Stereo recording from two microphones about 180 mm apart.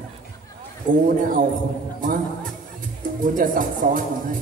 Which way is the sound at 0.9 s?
50° right (ahead or behind).